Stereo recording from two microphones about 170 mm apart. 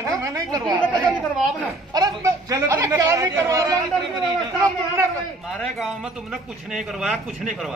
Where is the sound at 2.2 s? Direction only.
20° right (ahead or behind).